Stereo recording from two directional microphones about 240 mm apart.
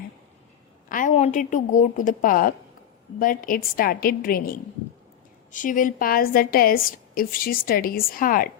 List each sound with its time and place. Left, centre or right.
0.9 s a woman's voice: left